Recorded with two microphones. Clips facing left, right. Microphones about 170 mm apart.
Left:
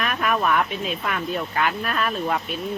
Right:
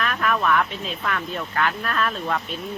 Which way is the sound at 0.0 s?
15° left (ahead or behind).